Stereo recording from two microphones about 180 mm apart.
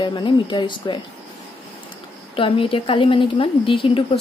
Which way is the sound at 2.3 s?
30° left (ahead or behind).